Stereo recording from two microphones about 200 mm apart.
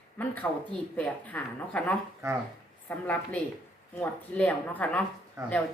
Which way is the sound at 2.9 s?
10° left (ahead or behind).